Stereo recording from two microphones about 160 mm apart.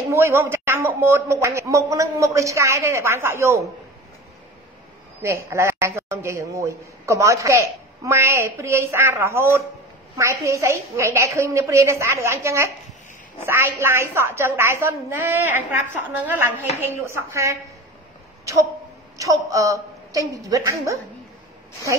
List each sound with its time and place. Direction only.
0.1 s a woman's voice: 15° right (ahead or behind)
5.2 s a woman's voice: 15° right (ahead or behind)
16.8 s a woman's voice: 15° right (ahead or behind)